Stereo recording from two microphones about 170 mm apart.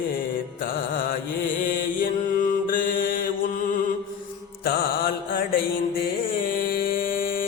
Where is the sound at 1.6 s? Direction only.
55° left (ahead or behind).